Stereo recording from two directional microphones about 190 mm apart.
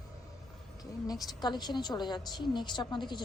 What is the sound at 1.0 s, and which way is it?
A woman's voice, 20° left (ahead or behind).